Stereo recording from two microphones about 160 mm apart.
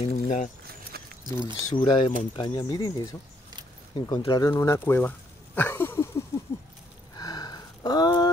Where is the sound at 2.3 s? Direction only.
25° left (ahead or behind).